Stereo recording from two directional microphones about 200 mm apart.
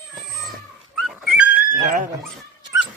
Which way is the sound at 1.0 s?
5° right (ahead or behind).